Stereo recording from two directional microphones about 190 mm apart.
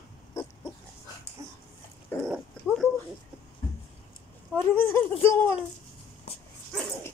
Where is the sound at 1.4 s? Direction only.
15° right (ahead or behind).